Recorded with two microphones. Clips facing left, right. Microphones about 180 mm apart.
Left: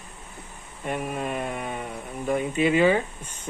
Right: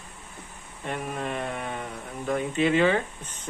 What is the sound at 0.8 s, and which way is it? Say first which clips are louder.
Speech: left 3 dB; 10° left (ahead or behind).